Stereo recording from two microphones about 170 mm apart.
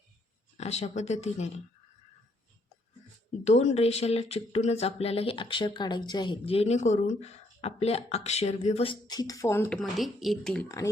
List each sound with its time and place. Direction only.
0.5 s speech: 40° left (ahead or behind)
3.4 s speech: 40° left (ahead or behind); by 9.7 s 15° left (ahead or behind)
9.7 s a woman's voice: centre (ahead or behind)